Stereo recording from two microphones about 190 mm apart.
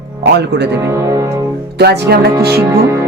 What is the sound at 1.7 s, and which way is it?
Speech, 60° right (ahead or behind).